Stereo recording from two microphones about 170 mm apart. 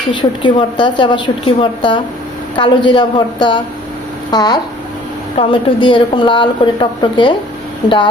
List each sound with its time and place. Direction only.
0.1 s a woman's voice: 30° left (ahead or behind)